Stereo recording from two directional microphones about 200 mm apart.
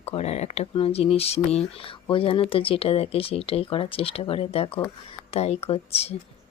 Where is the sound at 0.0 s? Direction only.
30° left (ahead or behind).